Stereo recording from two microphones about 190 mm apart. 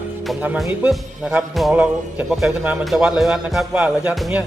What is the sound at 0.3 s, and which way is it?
Speech, 5° right (ahead or behind).